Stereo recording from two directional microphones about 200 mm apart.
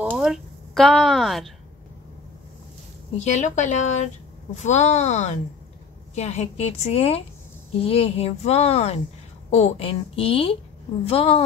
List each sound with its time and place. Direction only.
0.1 s a woman's voice: centre (ahead or behind)
3.2 s a woman's voice: 35° left (ahead or behind)